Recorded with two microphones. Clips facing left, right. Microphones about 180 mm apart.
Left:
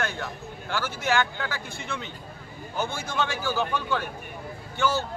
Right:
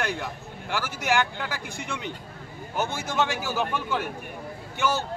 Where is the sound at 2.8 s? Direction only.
20° right (ahead or behind).